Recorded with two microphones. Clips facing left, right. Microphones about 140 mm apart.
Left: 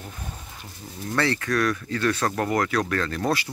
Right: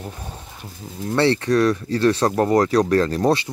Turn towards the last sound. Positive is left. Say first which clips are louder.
# right 7 dB
turn(degrees=-30)  # may be behind; listen again after turning